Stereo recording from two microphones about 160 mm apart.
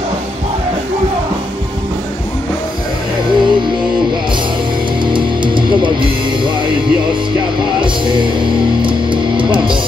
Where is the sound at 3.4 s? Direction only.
30° right (ahead or behind).